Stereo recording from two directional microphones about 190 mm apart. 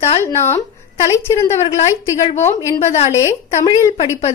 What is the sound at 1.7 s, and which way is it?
Speech, 35° left (ahead or behind).